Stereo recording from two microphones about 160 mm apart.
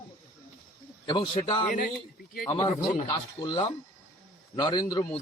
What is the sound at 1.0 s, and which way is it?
Speech, 25° left (ahead or behind).